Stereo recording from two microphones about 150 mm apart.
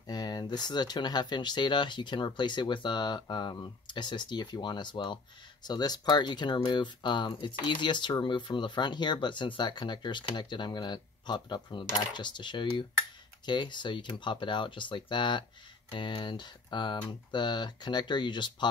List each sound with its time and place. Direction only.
0.0 s speech: 25° left (ahead or behind)